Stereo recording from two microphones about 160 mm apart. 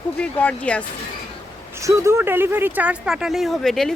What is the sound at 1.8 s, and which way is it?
Speech, 20° right (ahead or behind).